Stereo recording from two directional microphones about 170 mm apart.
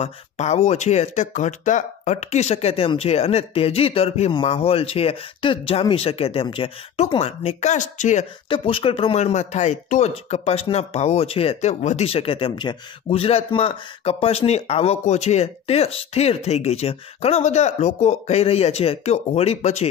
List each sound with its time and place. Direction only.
0.0 s speech: 40° left (ahead or behind)
8.5 s speech: 30° left (ahead or behind)